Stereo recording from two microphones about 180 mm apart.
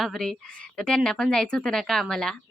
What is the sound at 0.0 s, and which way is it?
Speech, centre (ahead or behind).